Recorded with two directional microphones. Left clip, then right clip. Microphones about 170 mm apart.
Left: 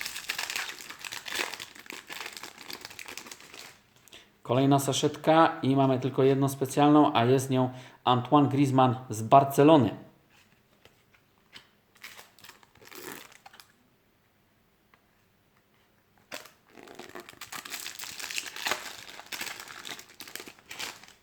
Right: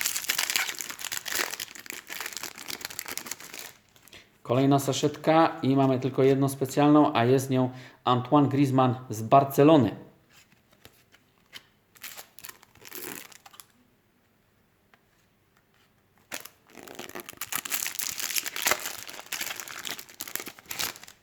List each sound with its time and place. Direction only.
0.0 s crumpling: 25° right (ahead or behind)
3.0 s a sound: 40° right (ahead or behind)
4.1 s speech: 5° right (ahead or behind)
11.9 s camera: 35° right (ahead or behind)
13.1 s crumpling: 15° right (ahead or behind)
16.3 s crumpling: 20° right (ahead or behind)
20.3 s crumpling: 40° right (ahead or behind)